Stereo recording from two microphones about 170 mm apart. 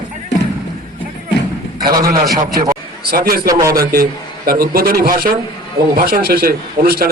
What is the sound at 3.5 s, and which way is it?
Speech, 20° right (ahead or behind).